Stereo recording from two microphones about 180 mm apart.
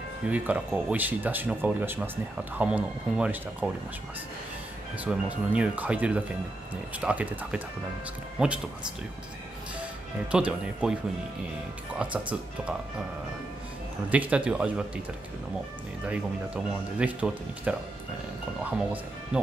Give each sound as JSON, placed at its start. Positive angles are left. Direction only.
{"t": 0.3, "sound": "speech", "side_deg": -10}
{"t": 4.9, "sound": "speech", "side_deg": -10}
{"t": 10.3, "sound": "speech", "side_deg": -5}
{"t": 12.0, "sound": "speech", "side_deg": -5}
{"t": 14.1, "sound": "speech", "side_deg": -5}
{"t": 16.1, "sound": "speech", "side_deg": -5}